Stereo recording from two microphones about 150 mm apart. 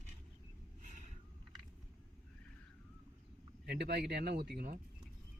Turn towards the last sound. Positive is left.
turn(degrees=-90)